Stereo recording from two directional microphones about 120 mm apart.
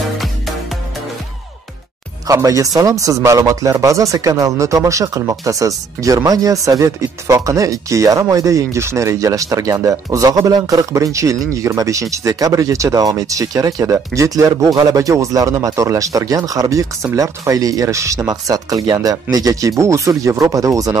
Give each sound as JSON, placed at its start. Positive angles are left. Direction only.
{"t": 2.2, "sound": "speech", "side_deg": -30}